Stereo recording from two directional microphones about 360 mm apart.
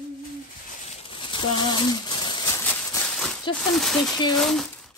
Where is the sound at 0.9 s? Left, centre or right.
Centre.